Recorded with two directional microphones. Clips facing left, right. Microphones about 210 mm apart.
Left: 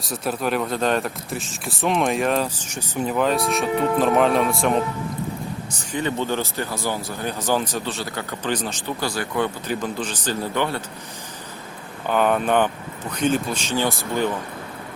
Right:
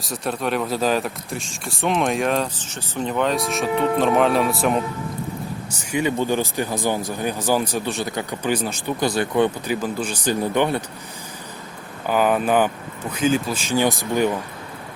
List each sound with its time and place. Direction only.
0.0 s speech: centre (ahead or behind)
2.6 s speech: 10° left (ahead or behind)
5.9 s speech: 10° right (ahead or behind)
9.0 s speech: 20° right (ahead or behind)
9.6 s speech: 10° right (ahead or behind)
12.0 s speech: 5° right (ahead or behind)